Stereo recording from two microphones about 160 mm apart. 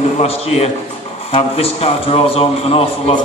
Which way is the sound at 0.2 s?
40° left (ahead or behind).